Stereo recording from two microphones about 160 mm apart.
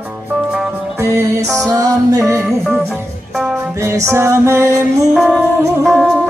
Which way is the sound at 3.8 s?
15° right (ahead or behind).